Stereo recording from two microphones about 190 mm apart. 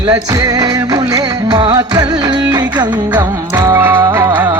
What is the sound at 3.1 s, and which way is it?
Music, 10° right (ahead or behind).